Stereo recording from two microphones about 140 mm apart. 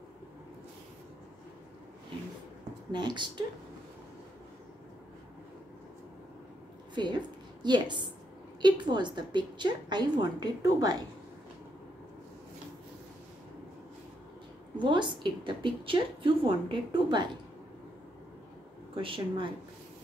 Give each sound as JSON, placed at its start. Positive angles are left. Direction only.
{"t": 2.9, "sound": "a woman's voice", "side_deg": -30}
{"t": 7.0, "sound": "a woman's voice", "side_deg": -30}
{"t": 14.8, "sound": "a woman's voice", "side_deg": -35}
{"t": 18.9, "sound": "a woman's voice", "side_deg": -40}